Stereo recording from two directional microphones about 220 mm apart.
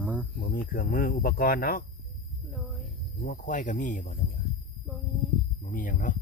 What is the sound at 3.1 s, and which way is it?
Speech, 40° left (ahead or behind).